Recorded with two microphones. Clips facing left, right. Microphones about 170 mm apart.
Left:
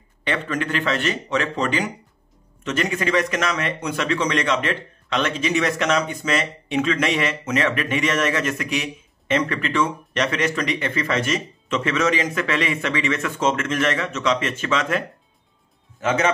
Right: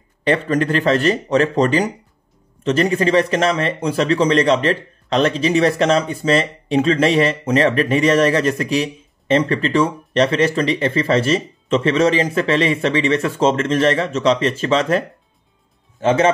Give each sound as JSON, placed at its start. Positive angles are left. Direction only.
{"t": 0.2, "sound": "a man's voice", "side_deg": -35}